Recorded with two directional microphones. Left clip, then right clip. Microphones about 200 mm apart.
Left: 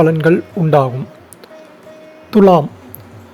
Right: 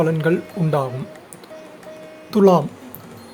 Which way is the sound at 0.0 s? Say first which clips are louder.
Left 7 dB; 20° left (ahead or behind).